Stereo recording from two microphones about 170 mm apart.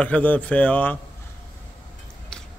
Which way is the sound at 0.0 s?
10° left (ahead or behind).